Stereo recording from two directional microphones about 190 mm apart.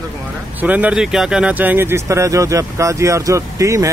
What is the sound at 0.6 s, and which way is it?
Speech, 10° right (ahead or behind).